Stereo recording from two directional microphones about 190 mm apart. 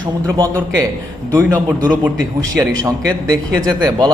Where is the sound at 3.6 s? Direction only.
20° right (ahead or behind).